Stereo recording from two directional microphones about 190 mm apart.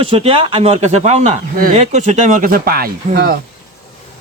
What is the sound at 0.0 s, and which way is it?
Speech, 30° right (ahead or behind).